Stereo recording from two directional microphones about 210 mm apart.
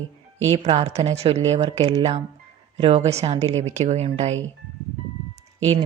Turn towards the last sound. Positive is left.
turn(degrees=-30)  # may be behind; listen again after turning